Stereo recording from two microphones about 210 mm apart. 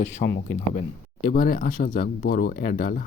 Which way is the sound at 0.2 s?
55° left (ahead or behind).